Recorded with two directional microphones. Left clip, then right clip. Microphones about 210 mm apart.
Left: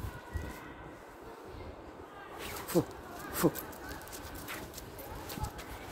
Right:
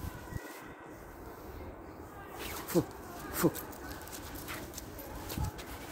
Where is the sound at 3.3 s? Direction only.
10° right (ahead or behind).